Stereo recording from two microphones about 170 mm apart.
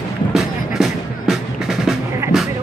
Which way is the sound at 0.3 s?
Centre (ahead or behind).